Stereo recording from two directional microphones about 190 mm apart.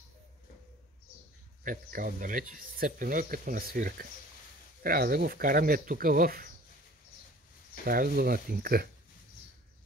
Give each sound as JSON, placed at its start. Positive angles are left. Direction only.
{"t": 1.6, "sound": "speech", "side_deg": -45}
{"t": 7.8, "sound": "speech", "side_deg": -50}